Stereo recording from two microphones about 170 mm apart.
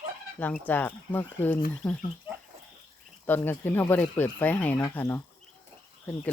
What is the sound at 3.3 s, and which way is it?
Speech, 10° left (ahead or behind).